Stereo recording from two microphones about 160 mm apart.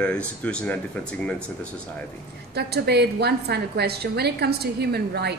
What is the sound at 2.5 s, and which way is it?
A woman's voice, 90° right.